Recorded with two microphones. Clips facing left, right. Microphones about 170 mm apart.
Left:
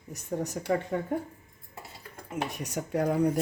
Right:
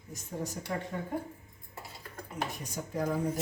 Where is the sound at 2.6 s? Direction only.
70° left (ahead or behind).